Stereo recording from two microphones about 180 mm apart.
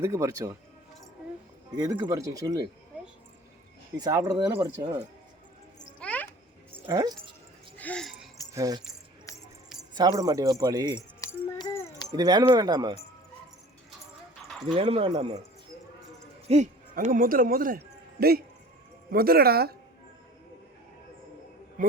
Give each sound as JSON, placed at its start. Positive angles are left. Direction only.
{"t": 0.0, "sound": "speech", "side_deg": -15}
{"t": 1.7, "sound": "speech", "side_deg": -20}
{"t": 3.9, "sound": "speech", "side_deg": -20}
{"t": 6.0, "sound": "a sound", "side_deg": 5}
{"t": 6.8, "sound": "speech", "side_deg": -20}
{"t": 7.8, "sound": "a sound", "side_deg": 5}
{"t": 8.5, "sound": "speech", "side_deg": -20}
{"t": 9.9, "sound": "speech", "side_deg": -20}
{"t": 11.2, "sound": "music", "side_deg": 15}
{"t": 11.7, "sound": "keys jangling", "side_deg": 15}
{"t": 12.1, "sound": "speech", "side_deg": -20}
{"t": 14.8, "sound": "speech", "side_deg": -30}
{"t": 16.5, "sound": "a man's voice", "side_deg": -40}
{"t": 21.8, "sound": "a sound", "side_deg": -45}